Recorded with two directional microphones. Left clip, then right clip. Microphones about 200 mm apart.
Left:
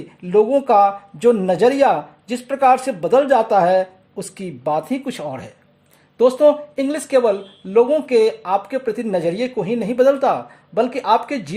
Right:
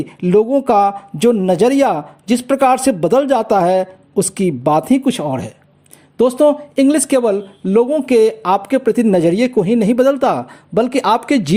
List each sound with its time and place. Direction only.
0.2 s speech: 30° right (ahead or behind)